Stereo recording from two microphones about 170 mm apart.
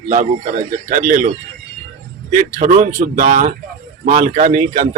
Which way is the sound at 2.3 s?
50° right (ahead or behind).